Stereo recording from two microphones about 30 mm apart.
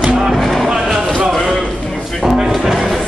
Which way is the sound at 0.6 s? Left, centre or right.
Centre.